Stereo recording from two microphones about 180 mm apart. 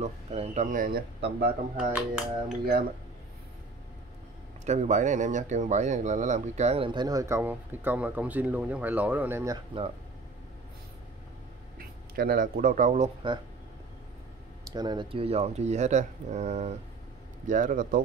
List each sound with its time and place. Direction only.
0.0 s a man's voice: 35° right (ahead or behind); by 1.5 s 60° right (ahead or behind)
1.8 s speech: 5° right (ahead or behind)
4.6 s speech: 40° right (ahead or behind); by 9.6 s 15° right (ahead or behind)
11.8 s speech: 55° right (ahead or behind)
14.7 s a man's voice: 25° right (ahead or behind); by 18.0 s 50° right (ahead or behind)